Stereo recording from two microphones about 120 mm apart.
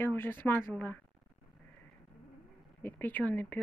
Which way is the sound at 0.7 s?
15° left (ahead or behind).